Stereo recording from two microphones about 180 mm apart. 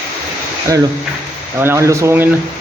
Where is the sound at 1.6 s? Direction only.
15° right (ahead or behind).